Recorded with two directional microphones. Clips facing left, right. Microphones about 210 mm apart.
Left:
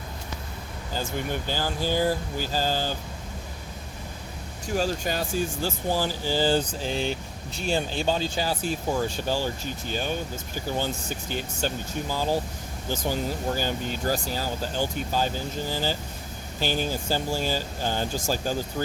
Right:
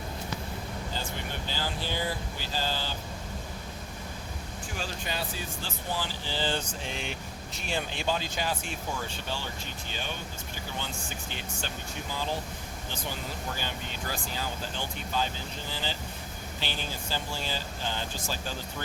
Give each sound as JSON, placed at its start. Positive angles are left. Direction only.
{"t": 1.5, "sound": "speech", "side_deg": 45}
{"t": 4.7, "sound": "speech", "side_deg": 45}
{"t": 11.3, "sound": "speech", "side_deg": 40}
{"t": 13.6, "sound": "speech", "side_deg": 40}